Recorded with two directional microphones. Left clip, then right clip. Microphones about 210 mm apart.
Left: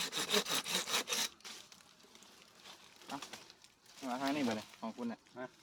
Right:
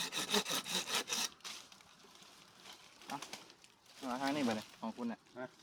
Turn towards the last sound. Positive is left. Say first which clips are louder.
# even
turn(degrees=-20)  # may be behind; listen again after turning